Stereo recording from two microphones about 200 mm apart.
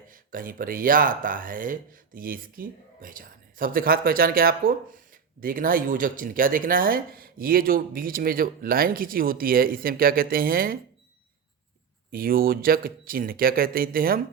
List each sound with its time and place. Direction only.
0.1 s speech: 45° right (ahead or behind)
12.1 s speech: 45° right (ahead or behind)